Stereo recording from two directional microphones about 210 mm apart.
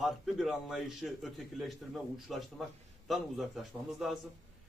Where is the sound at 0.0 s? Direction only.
Centre (ahead or behind).